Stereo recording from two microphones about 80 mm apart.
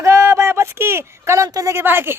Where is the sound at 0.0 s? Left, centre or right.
Right.